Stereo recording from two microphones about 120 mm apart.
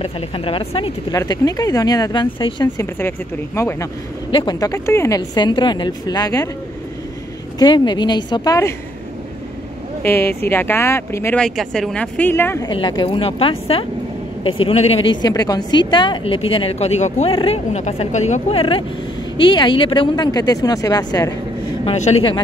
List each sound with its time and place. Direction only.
0.0 s a woman's voice: 50° left (ahead or behind)
1.1 s a woman's voice: 30° left (ahead or behind)
2.8 s speech: 20° left (ahead or behind)
4.3 s speech: 45° left (ahead or behind)
4.6 s a woman's voice: 25° left (ahead or behind)
7.5 s a woman's voice: 40° left (ahead or behind)
10.0 s speech: 20° left (ahead or behind)
11.3 s speech: 5° left (ahead or behind)
12.6 s a woman's voice: 40° left (ahead or behind)
15.2 s a woman's voice: 35° left (ahead or behind); by 18.4 s 75° left (ahead or behind)
18.5 s a woman's voice: 50° left (ahead or behind); by 21.3 s 30° left (ahead or behind)
21.8 s a woman's voice: 70° left (ahead or behind)